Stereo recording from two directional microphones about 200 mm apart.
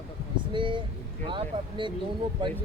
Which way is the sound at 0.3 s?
25° right (ahead or behind).